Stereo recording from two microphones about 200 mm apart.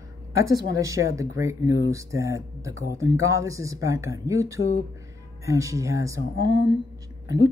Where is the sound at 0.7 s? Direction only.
15° right (ahead or behind).